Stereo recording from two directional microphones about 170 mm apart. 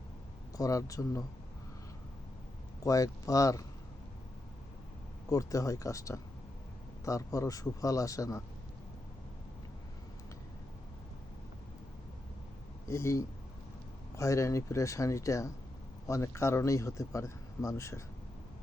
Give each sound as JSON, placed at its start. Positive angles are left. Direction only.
{"t": 0.5, "sound": "speech", "side_deg": 20}
{"t": 2.8, "sound": "speech", "side_deg": 20}
{"t": 5.3, "sound": "speech", "side_deg": 20}
{"t": 12.9, "sound": "speech", "side_deg": 15}